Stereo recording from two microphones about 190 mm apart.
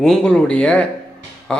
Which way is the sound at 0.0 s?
5° left (ahead or behind).